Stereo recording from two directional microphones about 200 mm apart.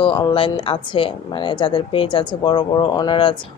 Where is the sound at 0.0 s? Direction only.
25° left (ahead or behind).